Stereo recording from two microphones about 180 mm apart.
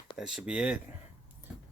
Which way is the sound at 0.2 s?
5° right (ahead or behind).